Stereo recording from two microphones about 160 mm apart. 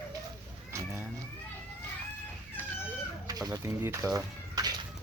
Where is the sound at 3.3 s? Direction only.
25° right (ahead or behind).